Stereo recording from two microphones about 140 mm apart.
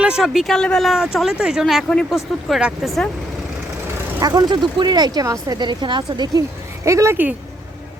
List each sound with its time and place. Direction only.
0.0 s speech: 5° right (ahead or behind)
4.2 s speech: 30° right (ahead or behind)